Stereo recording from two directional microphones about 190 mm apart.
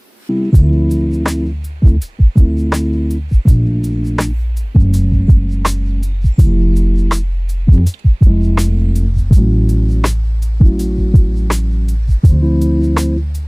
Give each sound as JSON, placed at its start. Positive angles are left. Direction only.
{"t": 0.5, "sound": "music", "side_deg": 0}